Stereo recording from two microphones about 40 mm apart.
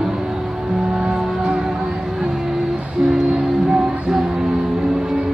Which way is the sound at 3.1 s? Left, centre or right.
Centre.